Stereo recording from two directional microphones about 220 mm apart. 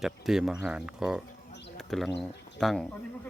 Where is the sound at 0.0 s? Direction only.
Centre (ahead or behind).